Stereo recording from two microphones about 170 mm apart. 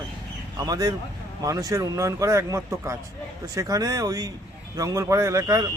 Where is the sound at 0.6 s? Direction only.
20° right (ahead or behind).